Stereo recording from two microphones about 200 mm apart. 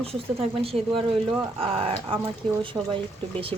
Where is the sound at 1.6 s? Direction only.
30° right (ahead or behind).